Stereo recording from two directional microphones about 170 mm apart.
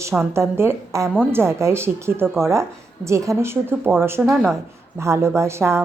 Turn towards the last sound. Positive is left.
turn(degrees=-15)  # may be behind; listen again after turning